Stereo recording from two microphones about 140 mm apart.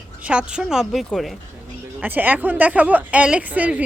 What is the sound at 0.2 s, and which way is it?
Speech, 10° right (ahead or behind).